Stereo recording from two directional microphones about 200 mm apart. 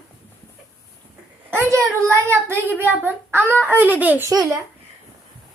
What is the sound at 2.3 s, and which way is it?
A child's voice, 10° right (ahead or behind).